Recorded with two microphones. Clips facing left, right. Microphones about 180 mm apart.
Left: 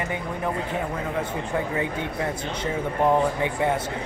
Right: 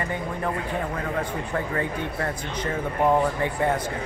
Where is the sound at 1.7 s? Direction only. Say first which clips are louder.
Even; 15° left (ahead or behind).